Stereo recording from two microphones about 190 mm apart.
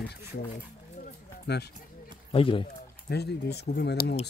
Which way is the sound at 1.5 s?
60° left (ahead or behind).